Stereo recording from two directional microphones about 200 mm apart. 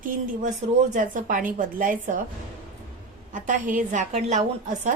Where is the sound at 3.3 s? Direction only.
40° right (ahead or behind).